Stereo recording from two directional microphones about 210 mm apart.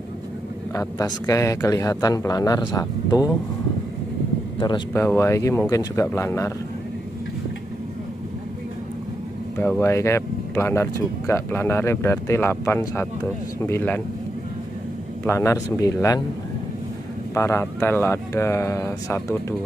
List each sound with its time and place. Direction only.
0.7 s speech: 15° left (ahead or behind)
4.6 s speech: 20° left (ahead or behind)
9.6 s speech: 10° left (ahead or behind)
15.2 s speech: 15° left (ahead or behind)
17.3 s speech: 15° left (ahead or behind)